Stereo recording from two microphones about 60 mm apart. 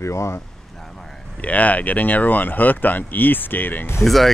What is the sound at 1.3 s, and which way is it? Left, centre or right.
Speech, left.